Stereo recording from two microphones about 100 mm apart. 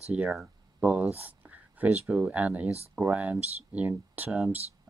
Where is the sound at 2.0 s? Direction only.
15° right (ahead or behind).